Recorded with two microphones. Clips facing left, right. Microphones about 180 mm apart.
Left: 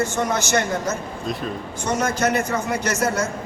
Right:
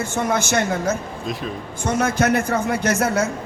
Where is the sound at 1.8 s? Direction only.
55° right (ahead or behind).